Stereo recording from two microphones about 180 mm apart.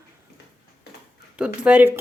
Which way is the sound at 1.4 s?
5° right (ahead or behind).